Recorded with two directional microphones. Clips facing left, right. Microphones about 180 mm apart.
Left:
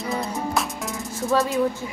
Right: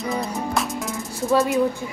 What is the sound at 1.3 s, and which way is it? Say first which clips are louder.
Music: right 2 dB; 20° right (ahead or behind).